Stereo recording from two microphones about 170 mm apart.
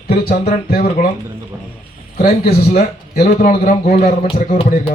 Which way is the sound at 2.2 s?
50° left (ahead or behind).